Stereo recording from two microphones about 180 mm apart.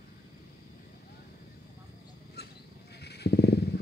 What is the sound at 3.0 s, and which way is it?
Wild animals, 65° left (ahead or behind).